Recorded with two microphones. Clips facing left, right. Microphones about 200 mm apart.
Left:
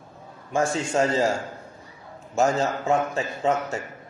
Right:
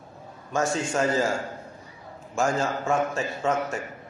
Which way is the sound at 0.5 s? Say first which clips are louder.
Left 2 dB; 30° left (ahead or behind).